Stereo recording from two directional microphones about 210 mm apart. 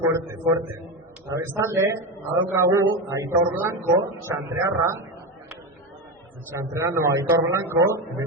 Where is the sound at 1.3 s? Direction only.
15° right (ahead or behind).